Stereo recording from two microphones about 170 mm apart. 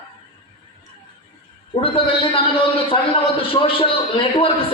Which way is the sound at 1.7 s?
30° left (ahead or behind).